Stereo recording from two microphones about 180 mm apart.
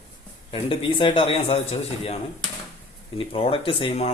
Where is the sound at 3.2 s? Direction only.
30° left (ahead or behind).